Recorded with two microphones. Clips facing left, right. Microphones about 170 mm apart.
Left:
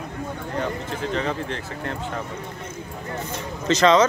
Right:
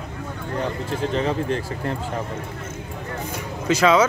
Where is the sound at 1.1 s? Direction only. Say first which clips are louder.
Right 4 dB; 30° right (ahead or behind).